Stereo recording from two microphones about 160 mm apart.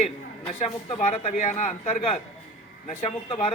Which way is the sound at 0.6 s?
40° left (ahead or behind).